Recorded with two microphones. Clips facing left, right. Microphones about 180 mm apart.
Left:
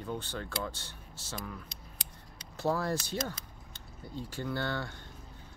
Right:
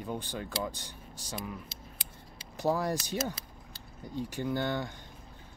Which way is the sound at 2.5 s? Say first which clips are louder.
Right 1 dB; 15° right (ahead or behind).